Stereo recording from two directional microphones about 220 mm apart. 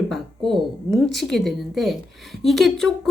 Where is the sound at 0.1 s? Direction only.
Centre (ahead or behind).